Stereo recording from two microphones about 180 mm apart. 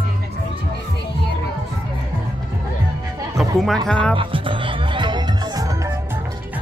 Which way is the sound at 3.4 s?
Centre (ahead or behind).